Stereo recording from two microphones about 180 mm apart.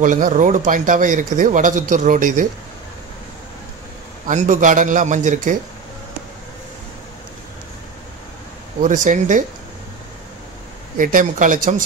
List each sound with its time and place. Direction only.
0.0 s speech: 45° right (ahead or behind)
4.3 s speech: 45° right (ahead or behind)
8.8 s speech: 45° right (ahead or behind)
11.0 s speech: 50° right (ahead or behind)